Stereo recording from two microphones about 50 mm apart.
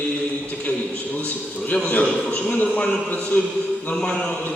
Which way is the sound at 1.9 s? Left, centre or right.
Left.